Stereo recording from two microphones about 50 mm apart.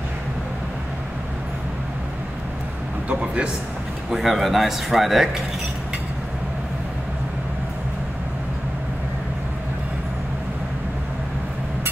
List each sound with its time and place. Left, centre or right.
3.1 s a man's voice: right
4.1 s speech: centre